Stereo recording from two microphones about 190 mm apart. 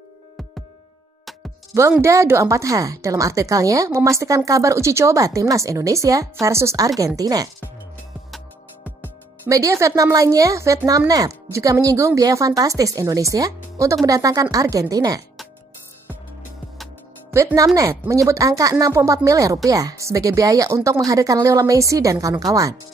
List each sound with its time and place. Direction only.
1.7 s speech: 15° right (ahead or behind)
8.8 s speech: 10° right (ahead or behind)
17.3 s speech: 15° right (ahead or behind)